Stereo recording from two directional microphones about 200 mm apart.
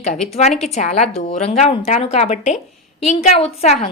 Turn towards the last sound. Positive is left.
turn(degrees=30)  # may be behind; listen again after turning